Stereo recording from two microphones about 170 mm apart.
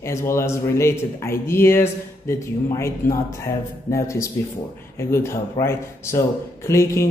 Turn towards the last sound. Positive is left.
turn(degrees=15)  # may be behind; listen again after turning